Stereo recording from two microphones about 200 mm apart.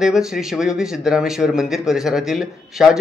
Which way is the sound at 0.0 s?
Centre (ahead or behind).